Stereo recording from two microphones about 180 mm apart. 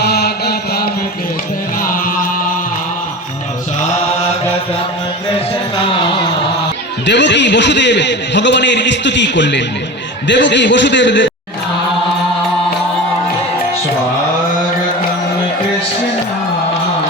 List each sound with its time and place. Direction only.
0.0 s mantra: 65° left (ahead or behind)
1.8 s chant: 50° left (ahead or behind)
7.0 s a man's voice: 75° left (ahead or behind)